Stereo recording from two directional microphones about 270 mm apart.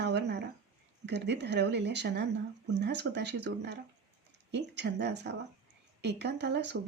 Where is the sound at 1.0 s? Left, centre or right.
Right.